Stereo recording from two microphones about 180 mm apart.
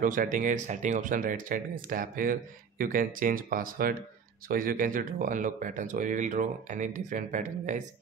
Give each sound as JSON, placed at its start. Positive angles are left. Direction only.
{"t": 0.0, "sound": "speech", "side_deg": -45}